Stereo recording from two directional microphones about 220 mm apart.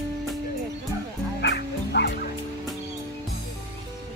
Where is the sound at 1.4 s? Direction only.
50° left (ahead or behind).